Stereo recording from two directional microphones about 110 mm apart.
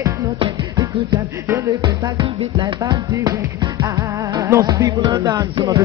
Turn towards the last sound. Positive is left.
turn(degrees=-35)  # may be behind; listen again after turning